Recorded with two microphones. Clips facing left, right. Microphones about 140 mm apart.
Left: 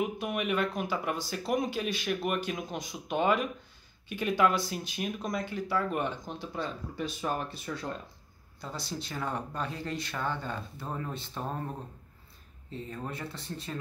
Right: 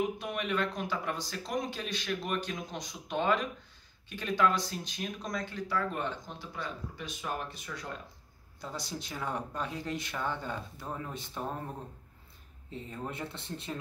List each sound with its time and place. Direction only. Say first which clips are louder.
0.2 s speech: left 3 dB; 10° left (ahead or behind)
6.5 s speech: left 3 dB; 35° left (ahead or behind)
8.5 s speech: left 1 dB; 15° right (ahead or behind)
10.8 s speech: left 2 dB; centre (ahead or behind)
12.9 s speech: right 1 dB; 20° right (ahead or behind)